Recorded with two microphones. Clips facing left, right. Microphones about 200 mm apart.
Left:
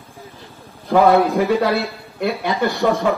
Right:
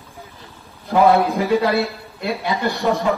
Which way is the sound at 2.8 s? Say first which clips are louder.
Left 2 dB; 50° left (ahead or behind).